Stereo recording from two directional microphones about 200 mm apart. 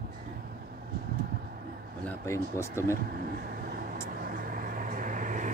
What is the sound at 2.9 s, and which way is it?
Vehicle, 45° right (ahead or behind).